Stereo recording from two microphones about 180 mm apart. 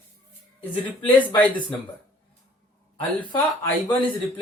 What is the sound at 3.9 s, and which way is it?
Speech, 25° left (ahead or behind).